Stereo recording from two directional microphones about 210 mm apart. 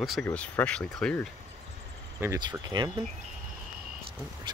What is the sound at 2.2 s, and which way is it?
Speech, 15° right (ahead or behind).